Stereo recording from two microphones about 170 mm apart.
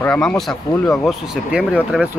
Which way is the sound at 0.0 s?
10° left (ahead or behind).